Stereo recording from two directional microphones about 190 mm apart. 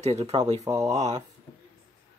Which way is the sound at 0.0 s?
35° right (ahead or behind).